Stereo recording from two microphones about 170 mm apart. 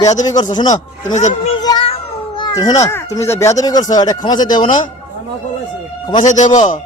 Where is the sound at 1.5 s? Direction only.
25° left (ahead or behind).